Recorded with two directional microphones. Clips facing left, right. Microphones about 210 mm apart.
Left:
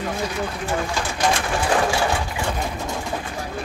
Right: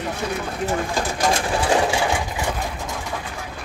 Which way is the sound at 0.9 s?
30° right (ahead or behind).